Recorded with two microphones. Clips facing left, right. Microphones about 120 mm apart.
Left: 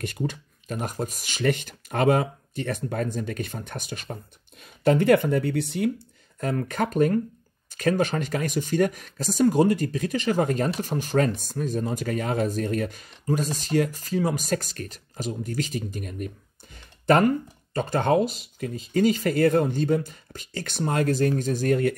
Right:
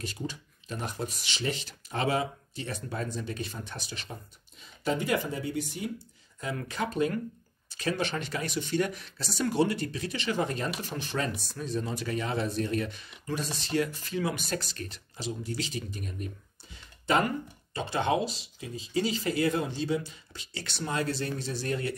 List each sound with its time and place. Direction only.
0.0 s speech: 55° left (ahead or behind)
6.4 s speech: 45° left (ahead or behind)
16.7 s a sound: 50° left (ahead or behind)
17.7 s speech: 45° left (ahead or behind)